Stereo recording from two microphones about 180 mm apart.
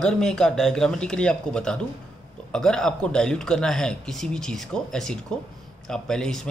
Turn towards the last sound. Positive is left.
turn(degrees=5)  # may be behind; listen again after turning